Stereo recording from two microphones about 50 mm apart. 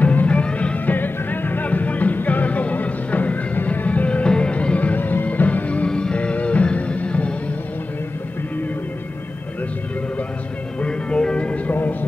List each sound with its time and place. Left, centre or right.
0.0 s music: left
0.7 s music: left
5.9 s music: centre
10.8 s music: left